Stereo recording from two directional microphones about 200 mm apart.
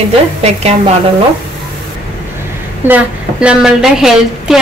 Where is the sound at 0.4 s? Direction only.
30° right (ahead or behind).